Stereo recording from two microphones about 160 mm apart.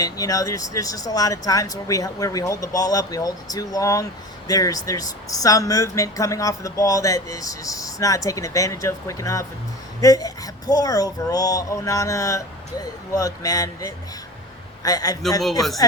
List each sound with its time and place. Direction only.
0.0 s speech: 20° left (ahead or behind)